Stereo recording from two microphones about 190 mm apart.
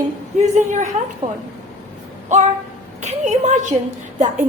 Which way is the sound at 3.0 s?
35° right (ahead or behind).